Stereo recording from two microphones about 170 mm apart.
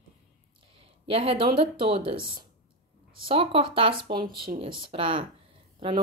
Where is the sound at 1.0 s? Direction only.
35° right (ahead or behind).